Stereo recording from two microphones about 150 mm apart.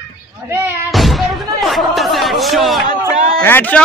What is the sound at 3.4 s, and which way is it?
Speech, 15° left (ahead or behind).